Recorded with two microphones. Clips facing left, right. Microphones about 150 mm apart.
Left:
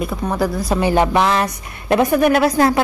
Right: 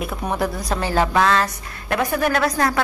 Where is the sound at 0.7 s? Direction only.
15° left (ahead or behind).